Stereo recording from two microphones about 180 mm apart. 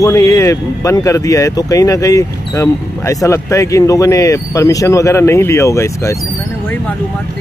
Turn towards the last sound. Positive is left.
turn(degrees=15)  # may be behind; listen again after turning